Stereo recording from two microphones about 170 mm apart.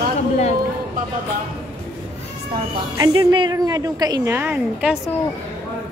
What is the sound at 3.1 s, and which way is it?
A woman's voice, 30° right (ahead or behind).